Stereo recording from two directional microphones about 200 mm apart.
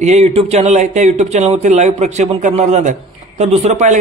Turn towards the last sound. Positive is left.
turn(degrees=-35)  # may be behind; listen again after turning